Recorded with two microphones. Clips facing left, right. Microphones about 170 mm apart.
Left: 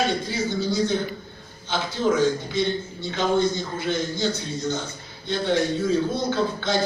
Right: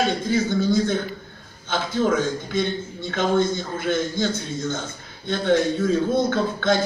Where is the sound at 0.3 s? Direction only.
50° right (ahead or behind).